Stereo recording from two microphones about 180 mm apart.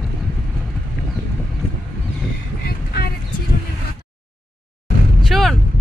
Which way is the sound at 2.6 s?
60° left (ahead or behind).